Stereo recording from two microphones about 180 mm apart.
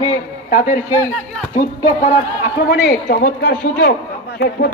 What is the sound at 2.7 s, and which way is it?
A man's voice, 55° left (ahead or behind).